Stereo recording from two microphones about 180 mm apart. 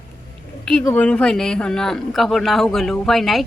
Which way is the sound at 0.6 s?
5° left (ahead or behind).